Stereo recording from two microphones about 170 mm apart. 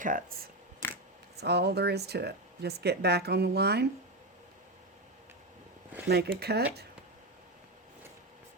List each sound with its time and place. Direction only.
0.0 s speech: 55° right (ahead or behind)
1.4 s speech: 80° right
6.1 s speech: 65° right (ahead or behind)